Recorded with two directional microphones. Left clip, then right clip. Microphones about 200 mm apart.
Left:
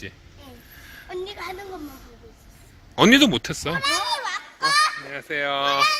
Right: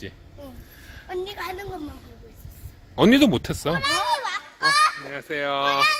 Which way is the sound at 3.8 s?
60° left (ahead or behind).